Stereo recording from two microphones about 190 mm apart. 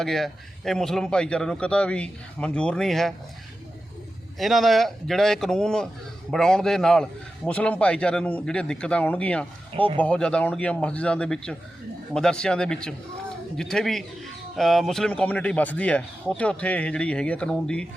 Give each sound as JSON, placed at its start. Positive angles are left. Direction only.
{"t": 0.0, "sound": "speech", "side_deg": 0}
{"t": 4.4, "sound": "speech", "side_deg": 0}